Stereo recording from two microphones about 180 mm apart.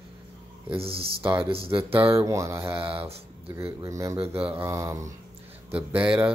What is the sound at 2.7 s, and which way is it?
Speech, 30° right (ahead or behind).